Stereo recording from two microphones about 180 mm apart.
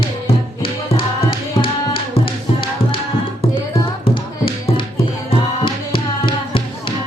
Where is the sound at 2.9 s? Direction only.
30° left (ahead or behind).